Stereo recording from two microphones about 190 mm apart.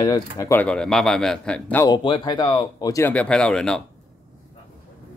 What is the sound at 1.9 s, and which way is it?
Speech, 25° left (ahead or behind).